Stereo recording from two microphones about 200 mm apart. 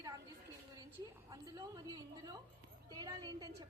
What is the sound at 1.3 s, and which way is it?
A woman's voice, 20° right (ahead or behind).